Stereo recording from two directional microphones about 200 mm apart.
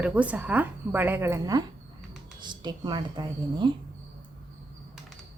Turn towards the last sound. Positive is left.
turn(degrees=-20)  # may be behind; listen again after turning